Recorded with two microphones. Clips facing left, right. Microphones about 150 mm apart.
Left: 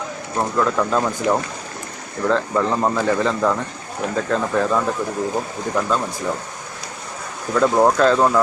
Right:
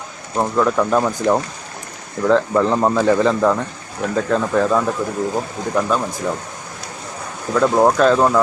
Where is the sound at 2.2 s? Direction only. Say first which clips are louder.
Right 4 dB; 15° right (ahead or behind).